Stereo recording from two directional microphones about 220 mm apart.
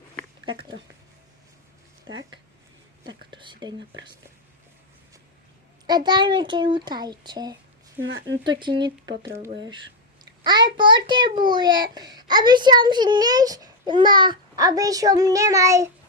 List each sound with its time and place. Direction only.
0.4 s speech: 20° right (ahead or behind)
3.1 s a child's voice: 20° right (ahead or behind)
5.8 s a child's voice: 20° right (ahead or behind)
8.0 s speech: 60° right (ahead or behind)
8.4 s a child's voice: 20° right (ahead or behind)